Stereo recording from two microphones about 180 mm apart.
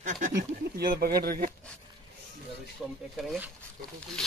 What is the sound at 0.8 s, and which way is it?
Speech, 55° right (ahead or behind).